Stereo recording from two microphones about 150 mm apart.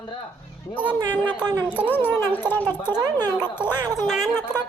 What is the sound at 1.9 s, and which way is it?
Speech, 15° left (ahead or behind).